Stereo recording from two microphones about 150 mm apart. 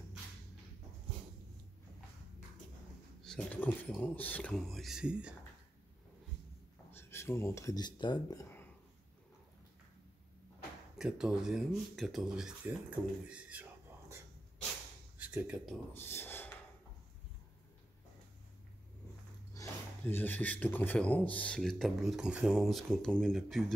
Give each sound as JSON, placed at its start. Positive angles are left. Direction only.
{"t": 3.3, "sound": "speech", "side_deg": 10}
{"t": 6.9, "sound": "speech", "side_deg": 15}
{"t": 11.0, "sound": "speech", "side_deg": -5}
{"t": 13.0, "sound": "speech", "side_deg": -15}
{"t": 13.3, "sound": "whispering", "side_deg": -10}
{"t": 15.1, "sound": "speech", "side_deg": -10}
{"t": 15.9, "sound": "speech", "side_deg": 15}
{"t": 19.5, "sound": "speech", "side_deg": 20}